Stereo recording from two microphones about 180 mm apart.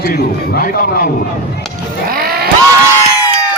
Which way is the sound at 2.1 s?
55° right (ahead or behind).